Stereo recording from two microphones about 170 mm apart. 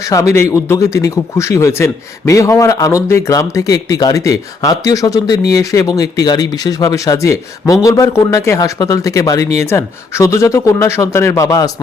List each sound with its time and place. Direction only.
0.1 s speech: 15° left (ahead or behind)